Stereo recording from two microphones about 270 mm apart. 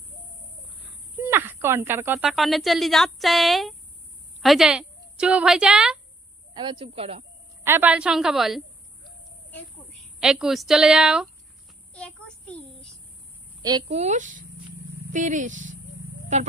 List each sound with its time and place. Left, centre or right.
1.2 s a woman's voice: centre
6.5 s speech: centre
7.6 s speech: centre
10.2 s speech: centre
11.9 s a sound: centre
13.6 s a woman's voice: centre
13.9 s speech: right